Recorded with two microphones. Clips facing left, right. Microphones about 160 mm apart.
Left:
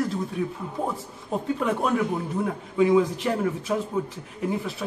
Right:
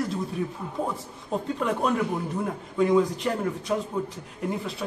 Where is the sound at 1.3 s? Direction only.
Centre (ahead or behind).